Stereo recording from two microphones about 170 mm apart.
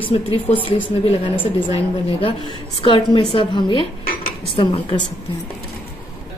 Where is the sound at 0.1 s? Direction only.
35° left (ahead or behind).